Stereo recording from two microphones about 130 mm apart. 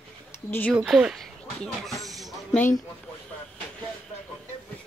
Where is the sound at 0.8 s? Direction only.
5° right (ahead or behind).